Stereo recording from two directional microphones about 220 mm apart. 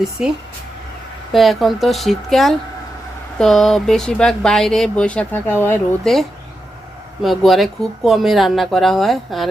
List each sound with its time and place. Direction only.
0.0 s speech: centre (ahead or behind)